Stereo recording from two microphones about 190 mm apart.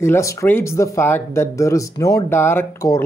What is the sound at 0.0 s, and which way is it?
Speech, 15° left (ahead or behind).